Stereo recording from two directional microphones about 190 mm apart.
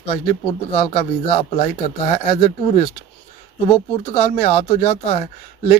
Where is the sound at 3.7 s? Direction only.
30° left (ahead or behind).